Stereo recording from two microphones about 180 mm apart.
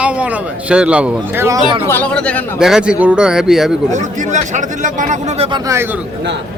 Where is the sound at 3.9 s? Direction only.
40° right (ahead or behind).